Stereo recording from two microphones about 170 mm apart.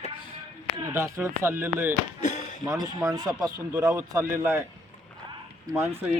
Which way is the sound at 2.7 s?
20° right (ahead or behind).